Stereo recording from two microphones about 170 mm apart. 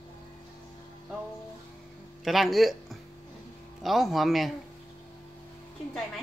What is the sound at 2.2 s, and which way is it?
Speech, centre (ahead or behind).